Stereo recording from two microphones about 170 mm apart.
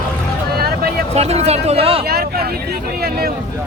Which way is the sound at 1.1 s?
40° right (ahead or behind).